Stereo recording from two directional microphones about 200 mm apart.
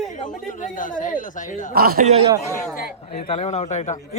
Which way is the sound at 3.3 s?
35° left (ahead or behind).